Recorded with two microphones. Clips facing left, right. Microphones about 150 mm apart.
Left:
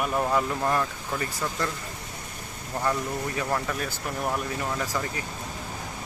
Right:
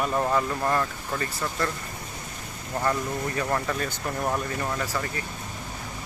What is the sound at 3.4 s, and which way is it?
Speech, 5° left (ahead or behind).